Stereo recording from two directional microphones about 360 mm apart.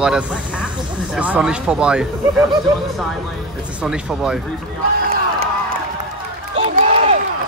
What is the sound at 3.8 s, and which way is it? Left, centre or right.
Speech, centre.